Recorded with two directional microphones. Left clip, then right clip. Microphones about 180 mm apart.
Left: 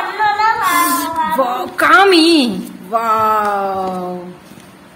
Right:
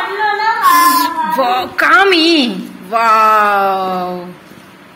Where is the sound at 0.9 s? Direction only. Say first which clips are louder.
Right 3 dB; 15° left (ahead or behind).